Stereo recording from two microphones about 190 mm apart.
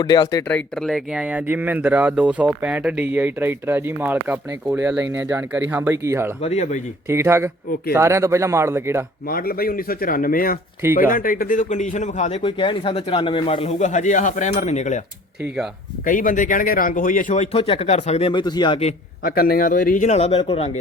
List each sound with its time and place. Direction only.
0.0 s speech: 20° left (ahead or behind)
0.4 s speech: 5° left (ahead or behind); by 6.3 s 15° right (ahead or behind)
6.4 s a man's voice: 35° left (ahead or behind)
7.1 s speech: 15° right (ahead or behind)
9.3 s a man's voice: 50° left (ahead or behind)
16.0 s a man's voice: 45° left (ahead or behind); by 18.8 s 25° left (ahead or behind)
19.2 s a man's voice: 50° left (ahead or behind); by 20.7 s 30° left (ahead or behind)